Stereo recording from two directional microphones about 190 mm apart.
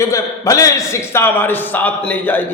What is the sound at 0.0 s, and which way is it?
A man's voice, 15° left (ahead or behind).